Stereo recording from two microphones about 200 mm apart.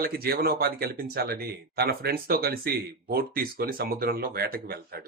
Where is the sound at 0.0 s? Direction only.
50° right (ahead or behind).